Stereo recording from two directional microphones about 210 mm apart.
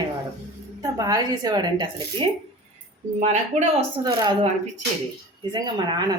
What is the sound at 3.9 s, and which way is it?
Speech, 20° right (ahead or behind).